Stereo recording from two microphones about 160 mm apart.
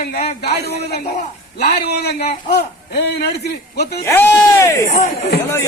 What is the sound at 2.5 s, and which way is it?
A man's voice, 90° left.